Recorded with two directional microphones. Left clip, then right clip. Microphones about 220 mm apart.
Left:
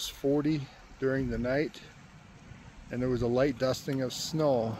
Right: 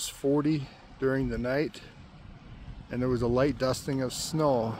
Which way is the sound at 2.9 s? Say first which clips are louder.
Right 2 dB; 5° right (ahead or behind).